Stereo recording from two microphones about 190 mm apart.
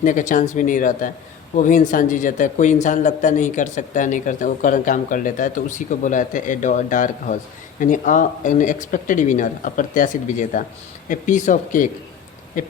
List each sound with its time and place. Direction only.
0.0 s speech: 40° left (ahead or behind)